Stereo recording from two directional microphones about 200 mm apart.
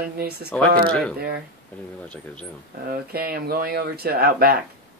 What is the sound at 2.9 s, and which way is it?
Speech, 50° right (ahead or behind).